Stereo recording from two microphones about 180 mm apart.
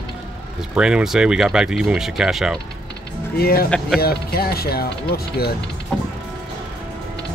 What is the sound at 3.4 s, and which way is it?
Speech, 55° left (ahead or behind).